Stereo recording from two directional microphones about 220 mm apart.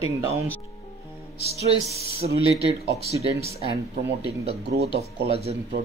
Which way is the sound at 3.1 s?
25° right (ahead or behind).